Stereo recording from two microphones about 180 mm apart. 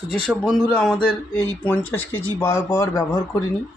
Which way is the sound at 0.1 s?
5° left (ahead or behind).